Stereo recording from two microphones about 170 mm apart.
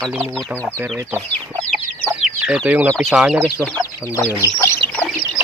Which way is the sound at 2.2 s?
5° right (ahead or behind).